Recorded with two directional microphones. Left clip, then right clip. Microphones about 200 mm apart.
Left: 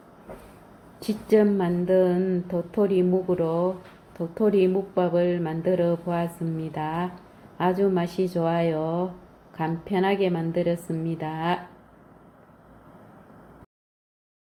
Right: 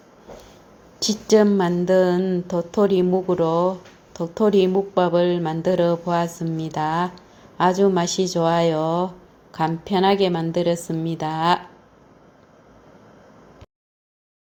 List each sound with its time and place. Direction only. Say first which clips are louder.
1.3 s a woman's voice: right 4 dB; 35° right (ahead or behind)